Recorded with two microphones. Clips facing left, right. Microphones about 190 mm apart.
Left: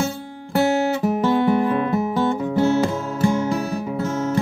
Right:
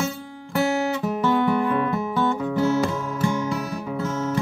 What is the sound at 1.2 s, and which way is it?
Music, 30° left (ahead or behind).